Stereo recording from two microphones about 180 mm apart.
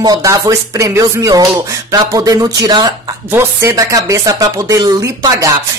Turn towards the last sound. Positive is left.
turn(degrees=-20)  # may be behind; listen again after turning